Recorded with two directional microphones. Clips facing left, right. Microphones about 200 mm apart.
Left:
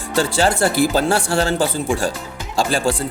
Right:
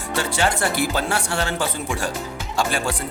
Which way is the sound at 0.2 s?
35° left (ahead or behind).